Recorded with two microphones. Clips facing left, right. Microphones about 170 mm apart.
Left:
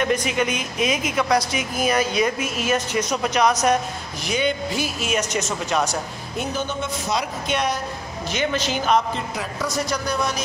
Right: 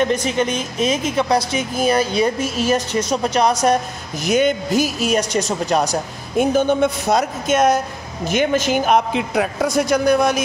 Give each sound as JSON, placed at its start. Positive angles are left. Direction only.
{"t": 0.0, "sound": "speech", "side_deg": -30}
{"t": 4.2, "sound": "speech", "side_deg": -45}
{"t": 6.3, "sound": "a woman's voice", "side_deg": -50}
{"t": 9.1, "sound": "a woman's voice", "side_deg": -65}